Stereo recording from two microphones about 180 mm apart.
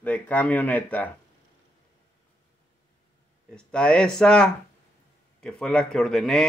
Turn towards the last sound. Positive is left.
turn(degrees=0)  # may be behind; listen again after turning